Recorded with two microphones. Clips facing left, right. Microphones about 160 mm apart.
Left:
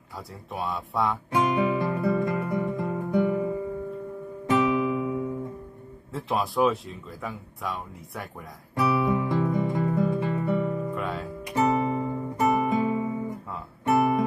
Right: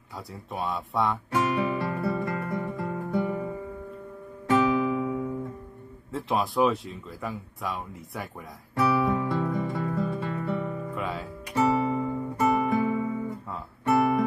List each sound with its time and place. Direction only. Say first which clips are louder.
0.5 s speech: even; centre (ahead or behind)
1.3 s guitar: left 5 dB; 15° left (ahead or behind)
4.7 s music: even; 15° left (ahead or behind)
6.1 s speech: even; centre (ahead or behind)
8.7 s guitar: even; 15° left (ahead or behind)
10.9 s music: left 2 dB; centre (ahead or behind)
11.4 s guitar: even; 15° left (ahead or behind)
13.8 s music: even; 20° left (ahead or behind)